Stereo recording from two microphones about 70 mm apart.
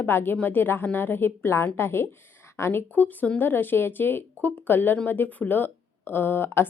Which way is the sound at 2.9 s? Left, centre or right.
Left.